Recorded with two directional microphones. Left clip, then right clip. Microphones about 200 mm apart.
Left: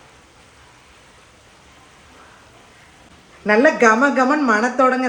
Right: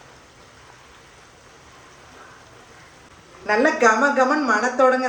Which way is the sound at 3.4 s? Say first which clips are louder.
Left 4 dB; 40° left (ahead or behind).